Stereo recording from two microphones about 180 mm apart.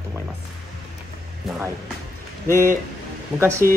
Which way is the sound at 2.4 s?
15° left (ahead or behind).